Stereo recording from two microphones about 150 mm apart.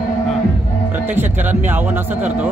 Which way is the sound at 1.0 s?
15° right (ahead or behind).